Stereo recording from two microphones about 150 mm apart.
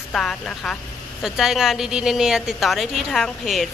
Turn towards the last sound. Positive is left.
turn(degrees=0)  # may be behind; listen again after turning